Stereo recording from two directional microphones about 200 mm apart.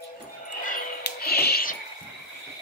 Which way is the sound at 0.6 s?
45° left (ahead or behind).